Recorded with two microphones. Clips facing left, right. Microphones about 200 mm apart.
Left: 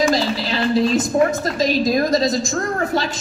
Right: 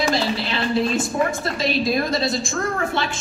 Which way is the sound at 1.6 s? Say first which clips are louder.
Left 4 dB; 40° left (ahead or behind).